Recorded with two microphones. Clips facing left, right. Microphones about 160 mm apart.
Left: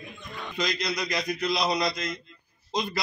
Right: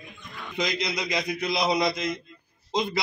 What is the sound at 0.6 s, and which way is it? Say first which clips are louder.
A man's voice: right 1 dB; 20° right (ahead or behind).